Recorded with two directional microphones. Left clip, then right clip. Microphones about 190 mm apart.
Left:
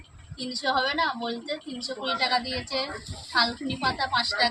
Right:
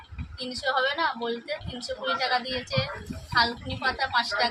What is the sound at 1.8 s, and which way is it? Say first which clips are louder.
Speech: left 1 dB; 40° right (ahead or behind).